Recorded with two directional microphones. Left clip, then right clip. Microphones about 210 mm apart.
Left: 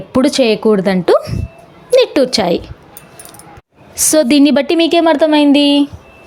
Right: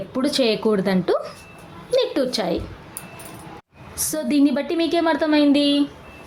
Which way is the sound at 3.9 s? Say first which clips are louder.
Left 12 dB; 40° left (ahead or behind).